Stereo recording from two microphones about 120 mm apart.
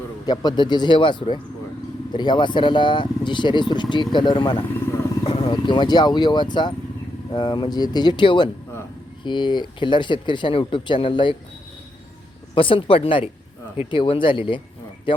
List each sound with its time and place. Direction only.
0.3 s speech: 40° left (ahead or behind)
12.5 s speech: 45° left (ahead or behind)